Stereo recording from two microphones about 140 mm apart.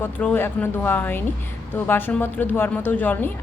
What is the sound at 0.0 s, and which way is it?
A woman's voice, 15° left (ahead or behind).